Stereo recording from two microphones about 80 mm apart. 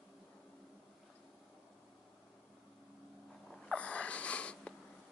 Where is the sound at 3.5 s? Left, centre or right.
Centre.